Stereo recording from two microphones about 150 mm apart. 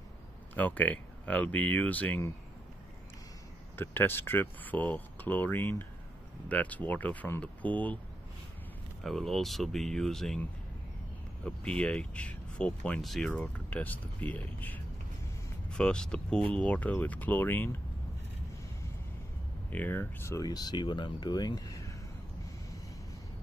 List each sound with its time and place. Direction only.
0.6 s speech: 10° left (ahead or behind)
3.7 s speech: 15° left (ahead or behind)
9.0 s speech: centre (ahead or behind)
11.4 s speech: 10° left (ahead or behind)
19.7 s speech: 10° left (ahead or behind)